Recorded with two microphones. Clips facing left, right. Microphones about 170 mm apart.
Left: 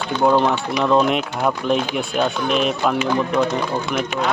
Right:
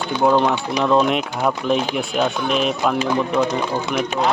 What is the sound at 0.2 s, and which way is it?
Speech, centre (ahead or behind).